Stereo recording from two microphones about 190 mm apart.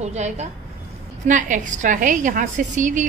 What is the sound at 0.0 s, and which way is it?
A woman's voice, 35° right (ahead or behind).